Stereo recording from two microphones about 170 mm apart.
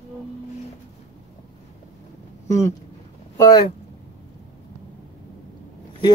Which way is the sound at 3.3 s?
25° left (ahead or behind).